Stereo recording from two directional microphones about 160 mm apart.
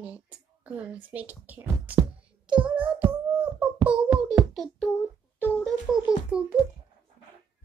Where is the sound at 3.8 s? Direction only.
5° right (ahead or behind).